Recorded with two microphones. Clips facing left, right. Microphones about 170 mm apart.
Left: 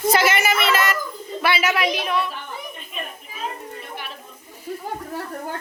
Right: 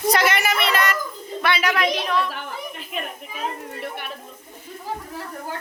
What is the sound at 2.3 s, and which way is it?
Speech, 80° right.